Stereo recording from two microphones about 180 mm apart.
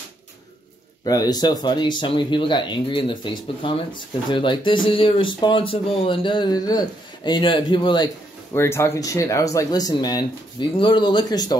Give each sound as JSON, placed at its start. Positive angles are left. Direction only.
{"t": 1.0, "sound": "speech", "side_deg": 20}
{"t": 8.5, "sound": "speech", "side_deg": 15}